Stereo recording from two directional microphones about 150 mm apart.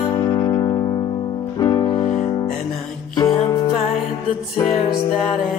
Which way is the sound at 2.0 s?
50° left (ahead or behind).